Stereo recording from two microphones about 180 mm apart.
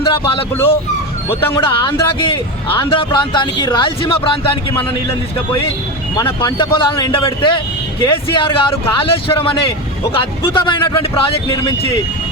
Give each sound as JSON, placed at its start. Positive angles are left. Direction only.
{"t": 0.0, "sound": "speech", "side_deg": 30}
{"t": 1.3, "sound": "speech", "side_deg": 10}
{"t": 1.6, "sound": "a man's voice", "side_deg": 30}
{"t": 6.1, "sound": "a man's voice", "side_deg": 25}